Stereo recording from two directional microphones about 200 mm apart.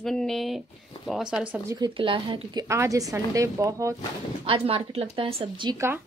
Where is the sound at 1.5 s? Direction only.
15° right (ahead or behind).